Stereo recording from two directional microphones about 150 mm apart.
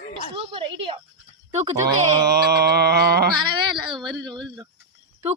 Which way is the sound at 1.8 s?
90° right.